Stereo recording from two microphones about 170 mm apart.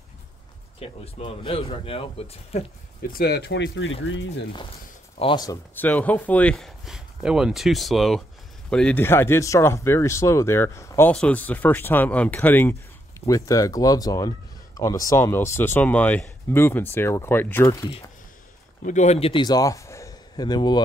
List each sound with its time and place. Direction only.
0.7 s speech: 35° left (ahead or behind)
3.1 s speech: 65° left (ahead or behind); by 3.8 s 90° left
5.2 s speech: 25° left (ahead or behind)
5.8 s speech: 10° left (ahead or behind)
18.9 s a man's voice: 45° left (ahead or behind); by 20.8 s 25° left (ahead or behind)